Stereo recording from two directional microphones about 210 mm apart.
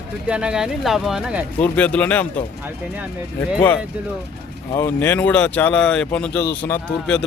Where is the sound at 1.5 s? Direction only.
5° left (ahead or behind).